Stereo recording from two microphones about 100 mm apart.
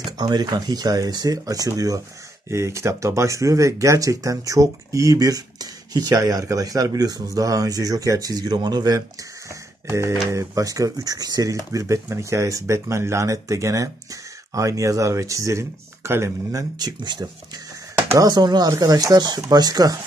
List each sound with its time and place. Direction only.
0.2 s speech: 45° right (ahead or behind)
9.5 s a sound: 30° right (ahead or behind)
10.3 s speech: 35° right (ahead or behind)
16.7 s speech: 45° right (ahead or behind)